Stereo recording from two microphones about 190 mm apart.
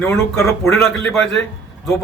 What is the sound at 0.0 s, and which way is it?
A man's voice, 15° left (ahead or behind).